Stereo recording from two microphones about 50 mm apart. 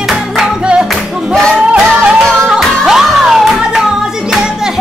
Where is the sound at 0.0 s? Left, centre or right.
Centre.